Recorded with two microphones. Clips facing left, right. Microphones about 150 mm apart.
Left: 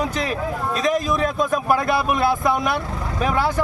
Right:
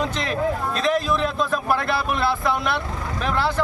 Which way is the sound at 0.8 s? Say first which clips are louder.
Left 1 dB; 40° left (ahead or behind).